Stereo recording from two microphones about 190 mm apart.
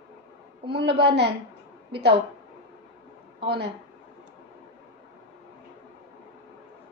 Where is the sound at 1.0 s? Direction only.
60° right (ahead or behind).